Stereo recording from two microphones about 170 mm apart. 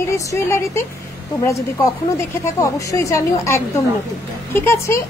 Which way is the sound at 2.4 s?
20° left (ahead or behind).